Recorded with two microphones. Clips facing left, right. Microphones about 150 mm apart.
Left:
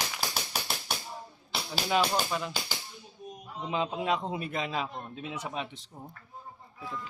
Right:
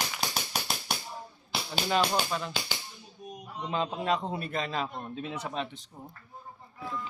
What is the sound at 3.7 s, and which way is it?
Speech, 10° left (ahead or behind).